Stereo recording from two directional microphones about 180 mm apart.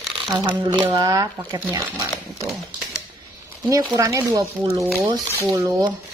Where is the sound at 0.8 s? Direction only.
20° right (ahead or behind).